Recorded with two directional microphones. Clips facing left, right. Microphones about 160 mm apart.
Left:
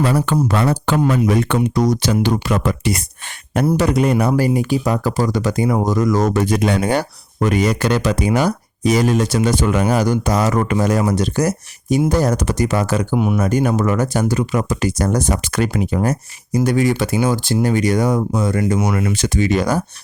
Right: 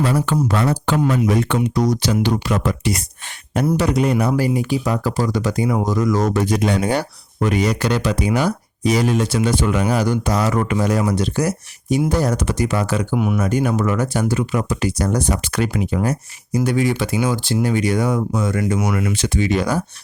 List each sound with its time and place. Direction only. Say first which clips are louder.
0.0 s speech: left 2 dB; 60° left (ahead or behind); by 13.1 s 45° left (ahead or behind)
13.1 s speech: left 2 dB; 25° left (ahead or behind)
13.4 s speech: left 2 dB; 45° left (ahead or behind)